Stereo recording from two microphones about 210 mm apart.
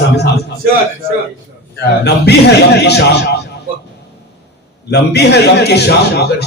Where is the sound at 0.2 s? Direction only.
50° left (ahead or behind).